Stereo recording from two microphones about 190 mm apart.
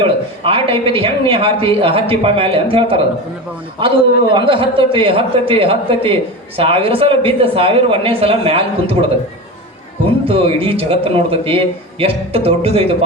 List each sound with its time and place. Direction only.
0.0 s speech: 30° right (ahead or behind)
10.2 s speech: 30° right (ahead or behind)